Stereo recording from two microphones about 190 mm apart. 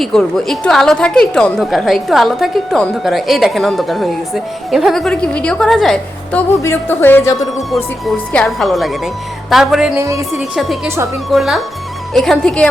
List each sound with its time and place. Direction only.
0.0 s a woman's voice: 5° left (ahead or behind)
10.0 s a woman's voice: 15° right (ahead or behind)
10.3 s a woman's voice: centre (ahead or behind)
10.8 s a woman's voice: 15° right (ahead or behind)
11.3 s a woman's voice: centre (ahead or behind)